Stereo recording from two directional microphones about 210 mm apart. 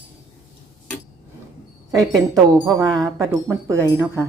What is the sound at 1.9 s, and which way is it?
Speech, centre (ahead or behind).